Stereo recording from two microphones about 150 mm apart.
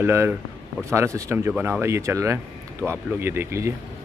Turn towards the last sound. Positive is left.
turn(degrees=-20)  # may be behind; listen again after turning